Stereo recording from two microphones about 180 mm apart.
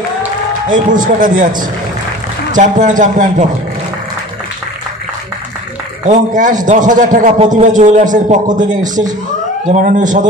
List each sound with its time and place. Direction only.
0.7 s a man's voice: 45° right (ahead or behind)
2.5 s a man's voice: 45° right (ahead or behind)
6.0 s a man's voice: 45° right (ahead or behind)
9.7 s a man's voice: 45° right (ahead or behind)